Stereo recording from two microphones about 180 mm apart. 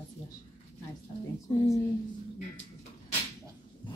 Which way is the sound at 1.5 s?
30° left (ahead or behind).